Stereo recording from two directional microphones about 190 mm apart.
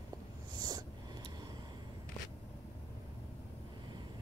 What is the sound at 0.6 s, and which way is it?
Snort, 20° right (ahead or behind).